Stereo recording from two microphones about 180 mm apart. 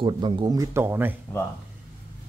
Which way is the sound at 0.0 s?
25° right (ahead or behind).